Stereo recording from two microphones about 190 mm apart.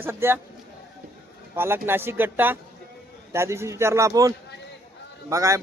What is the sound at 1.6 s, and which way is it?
Speech, 10° right (ahead or behind).